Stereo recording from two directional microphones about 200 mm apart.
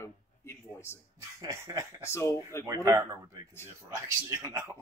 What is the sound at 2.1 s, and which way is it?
Speech, 15° left (ahead or behind).